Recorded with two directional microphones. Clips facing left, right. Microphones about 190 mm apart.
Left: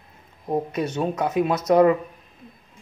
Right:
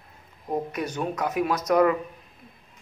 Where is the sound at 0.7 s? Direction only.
25° left (ahead or behind).